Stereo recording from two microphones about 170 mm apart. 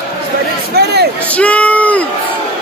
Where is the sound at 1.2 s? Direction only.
10° left (ahead or behind).